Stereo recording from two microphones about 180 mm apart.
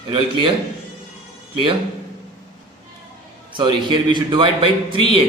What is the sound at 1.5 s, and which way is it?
Speech, 30° right (ahead or behind).